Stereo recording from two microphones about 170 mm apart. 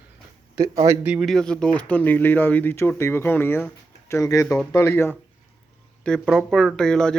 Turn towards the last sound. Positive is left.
turn(degrees=5)  # may be behind; listen again after turning